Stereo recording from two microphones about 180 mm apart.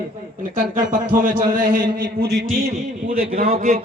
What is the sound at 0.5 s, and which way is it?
Speech, 50° right (ahead or behind).